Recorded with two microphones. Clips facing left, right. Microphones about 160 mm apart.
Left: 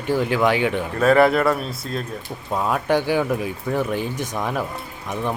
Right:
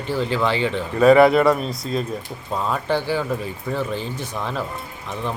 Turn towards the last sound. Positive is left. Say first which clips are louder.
# left 2 dB
turn(degrees=15)  # may be behind; listen again after turning